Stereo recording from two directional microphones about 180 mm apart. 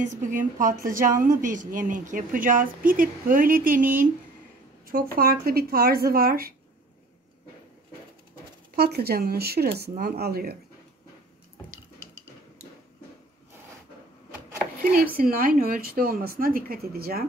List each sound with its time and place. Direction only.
0.0 s a woman's voice: 45° right (ahead or behind)
8.7 s speech: 60° right (ahead or behind)
15.1 s a woman's voice: 55° right (ahead or behind)